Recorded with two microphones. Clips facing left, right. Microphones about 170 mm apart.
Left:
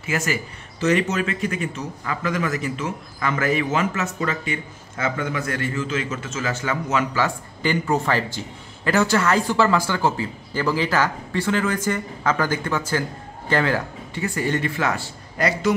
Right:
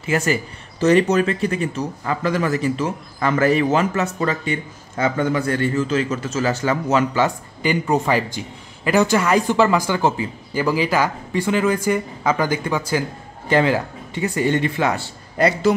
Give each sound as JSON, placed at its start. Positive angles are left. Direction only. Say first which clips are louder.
{"t": 0.0, "sound": "speech", "louder": "right 5 dB", "side_deg": -30}
{"t": 7.2, "sound": "a man's voice", "louder": "right 4 dB", "side_deg": -15}